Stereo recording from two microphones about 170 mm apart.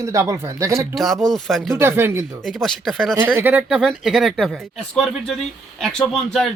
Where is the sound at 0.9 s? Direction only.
Centre (ahead or behind).